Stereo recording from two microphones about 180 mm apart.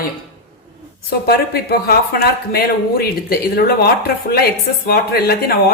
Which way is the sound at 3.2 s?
60° left (ahead or behind).